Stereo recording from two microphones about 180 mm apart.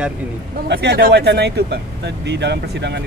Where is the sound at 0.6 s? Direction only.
65° right (ahead or behind).